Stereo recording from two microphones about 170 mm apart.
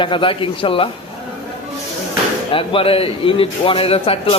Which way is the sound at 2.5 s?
30° left (ahead or behind).